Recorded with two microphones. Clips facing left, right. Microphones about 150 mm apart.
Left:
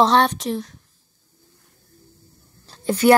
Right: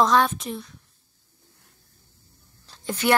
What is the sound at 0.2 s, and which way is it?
Speech, 80° left.